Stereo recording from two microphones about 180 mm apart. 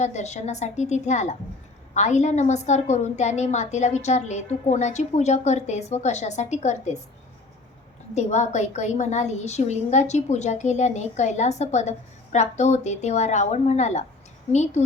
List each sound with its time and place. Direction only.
0.0 s a woman's voice: 40° left (ahead or behind)
8.1 s a woman's voice: 40° left (ahead or behind)